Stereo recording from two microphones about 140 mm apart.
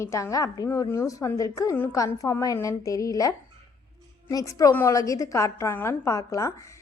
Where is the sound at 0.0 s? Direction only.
20° left (ahead or behind).